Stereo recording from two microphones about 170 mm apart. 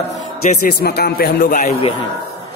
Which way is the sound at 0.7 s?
70° left (ahead or behind).